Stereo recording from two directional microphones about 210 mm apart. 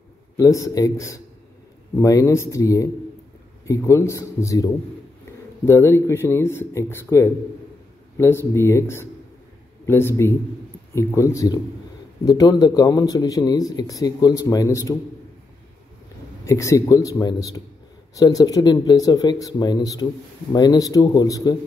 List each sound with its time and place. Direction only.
0.4 s a man's voice: 15° left (ahead or behind)
5.7 s a man's voice: 10° left (ahead or behind)
16.4 s a man's voice: 15° left (ahead or behind)